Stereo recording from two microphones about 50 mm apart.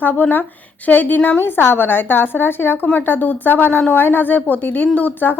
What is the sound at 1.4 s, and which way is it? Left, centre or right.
A woman's voice, left.